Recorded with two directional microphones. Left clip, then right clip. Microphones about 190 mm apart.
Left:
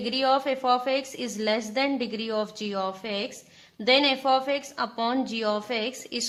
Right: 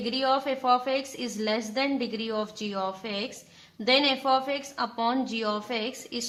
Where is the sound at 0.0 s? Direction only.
40° left (ahead or behind).